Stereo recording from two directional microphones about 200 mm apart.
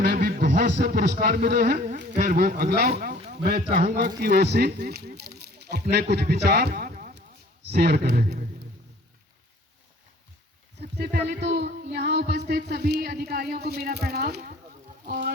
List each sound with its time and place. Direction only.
0.0 s a man's voice: 50° right (ahead or behind)
2.1 s music: 45° right (ahead or behind)
3.0 s speech: 45° right (ahead or behind)
7.7 s music: 50° right (ahead or behind)
10.8 s music: 55° right (ahead or behind)
15.0 s speech: 50° right (ahead or behind)